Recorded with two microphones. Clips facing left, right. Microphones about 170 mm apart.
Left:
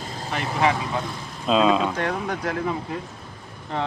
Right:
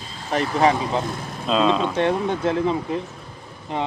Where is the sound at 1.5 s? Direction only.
5° left (ahead or behind).